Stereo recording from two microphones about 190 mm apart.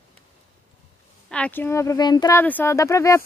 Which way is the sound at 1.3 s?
5° left (ahead or behind).